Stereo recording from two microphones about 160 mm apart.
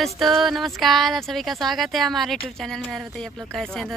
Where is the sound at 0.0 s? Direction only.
Centre (ahead or behind).